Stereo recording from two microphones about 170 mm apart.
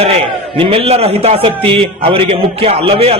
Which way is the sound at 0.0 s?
35° right (ahead or behind).